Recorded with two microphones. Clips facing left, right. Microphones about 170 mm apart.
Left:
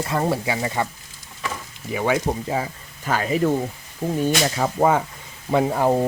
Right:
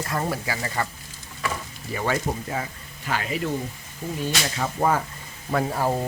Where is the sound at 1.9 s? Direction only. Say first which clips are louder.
Left 4 dB; 10° left (ahead or behind).